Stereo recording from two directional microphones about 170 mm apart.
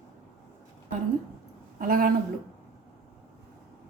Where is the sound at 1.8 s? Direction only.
55° right (ahead or behind).